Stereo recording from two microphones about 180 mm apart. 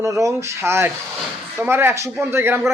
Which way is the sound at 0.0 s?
20° right (ahead or behind).